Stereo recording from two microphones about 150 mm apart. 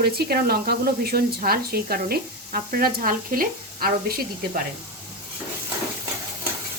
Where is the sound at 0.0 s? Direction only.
90° right.